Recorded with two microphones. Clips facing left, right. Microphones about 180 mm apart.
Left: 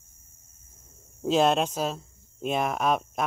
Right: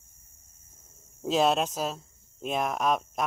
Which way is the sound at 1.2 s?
Centre (ahead or behind).